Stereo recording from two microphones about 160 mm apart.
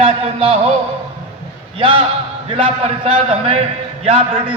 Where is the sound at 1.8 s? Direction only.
30° right (ahead or behind).